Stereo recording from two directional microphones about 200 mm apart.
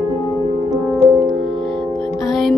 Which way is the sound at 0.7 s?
5° right (ahead or behind).